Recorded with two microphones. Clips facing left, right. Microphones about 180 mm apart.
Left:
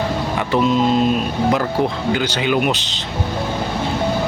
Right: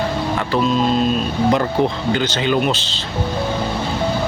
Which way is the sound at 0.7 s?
20° left (ahead or behind).